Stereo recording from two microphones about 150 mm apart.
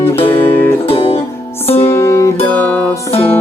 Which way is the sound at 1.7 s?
15° left (ahead or behind).